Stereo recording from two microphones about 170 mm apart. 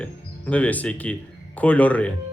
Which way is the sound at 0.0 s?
10° left (ahead or behind).